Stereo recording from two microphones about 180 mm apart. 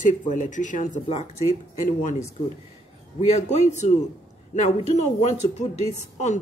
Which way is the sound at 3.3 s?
40° left (ahead or behind).